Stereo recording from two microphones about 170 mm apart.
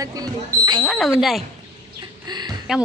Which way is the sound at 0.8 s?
Centre (ahead or behind).